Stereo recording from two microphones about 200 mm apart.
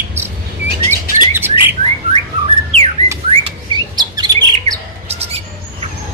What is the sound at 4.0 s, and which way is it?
Bird, 20° right (ahead or behind).